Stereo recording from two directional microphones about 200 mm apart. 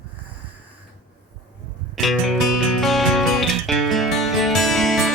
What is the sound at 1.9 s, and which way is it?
Music, centre (ahead or behind).